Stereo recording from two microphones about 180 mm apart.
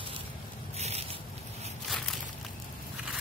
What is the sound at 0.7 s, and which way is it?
Zipper, 35° right (ahead or behind).